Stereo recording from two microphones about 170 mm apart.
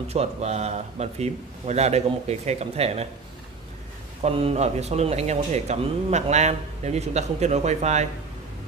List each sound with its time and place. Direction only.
0.1 s speech: 40° right (ahead or behind)
4.2 s speech: 35° right (ahead or behind)